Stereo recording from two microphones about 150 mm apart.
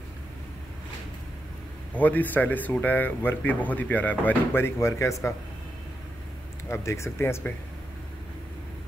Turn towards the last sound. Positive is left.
turn(degrees=15)  # may be behind; listen again after turning